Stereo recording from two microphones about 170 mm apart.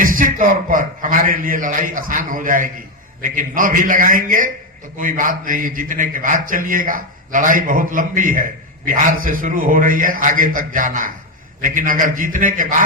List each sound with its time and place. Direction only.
0.0 s a man's voice: 50° right (ahead or behind)